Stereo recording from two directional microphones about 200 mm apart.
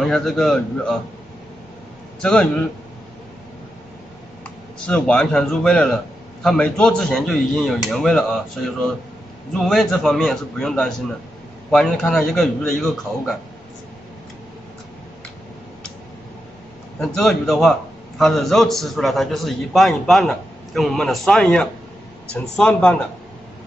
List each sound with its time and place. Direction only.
0.0 s a man's voice: centre (ahead or behind)
2.2 s a man's voice: 5° left (ahead or behind)
4.8 s a man's voice: 5° left (ahead or behind)
17.2 s a man's voice: centre (ahead or behind)